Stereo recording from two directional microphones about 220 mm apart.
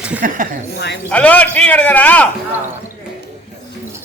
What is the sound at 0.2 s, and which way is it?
Speech, 35° right (ahead or behind).